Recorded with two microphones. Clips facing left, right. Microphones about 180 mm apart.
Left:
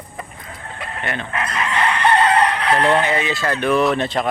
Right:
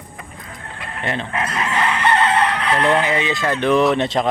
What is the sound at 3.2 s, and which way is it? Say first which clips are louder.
Speech: right 1 dB; 20° right (ahead or behind).